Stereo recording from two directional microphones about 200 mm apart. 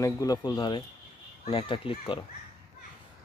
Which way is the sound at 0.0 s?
20° left (ahead or behind).